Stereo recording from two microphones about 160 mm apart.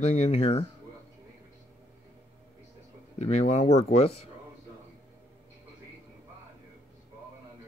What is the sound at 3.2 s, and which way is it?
Speech, 40° left (ahead or behind).